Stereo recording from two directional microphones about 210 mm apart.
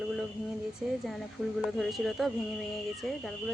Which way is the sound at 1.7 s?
Centre (ahead or behind).